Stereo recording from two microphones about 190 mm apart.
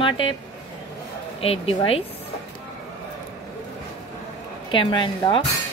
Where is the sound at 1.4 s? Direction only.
30° left (ahead or behind).